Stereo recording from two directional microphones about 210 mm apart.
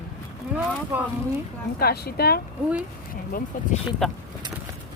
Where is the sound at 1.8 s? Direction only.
50° left (ahead or behind).